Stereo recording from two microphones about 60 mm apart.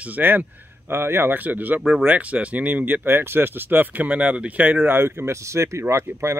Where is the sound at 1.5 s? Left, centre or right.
Right.